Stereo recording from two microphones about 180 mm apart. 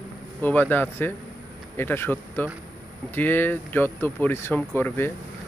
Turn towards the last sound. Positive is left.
turn(degrees=10)  # may be behind; listen again after turning